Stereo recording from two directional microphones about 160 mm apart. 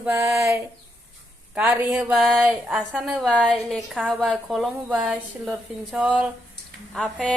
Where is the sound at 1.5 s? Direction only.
10° right (ahead or behind).